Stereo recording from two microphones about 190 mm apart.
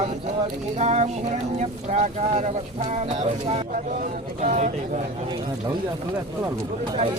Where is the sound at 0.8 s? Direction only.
35° right (ahead or behind).